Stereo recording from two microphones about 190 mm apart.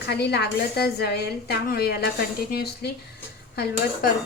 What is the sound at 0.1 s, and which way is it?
A woman's voice, 60° left (ahead or behind).